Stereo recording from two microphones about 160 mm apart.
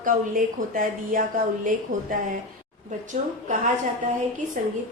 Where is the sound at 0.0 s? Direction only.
60° right (ahead or behind).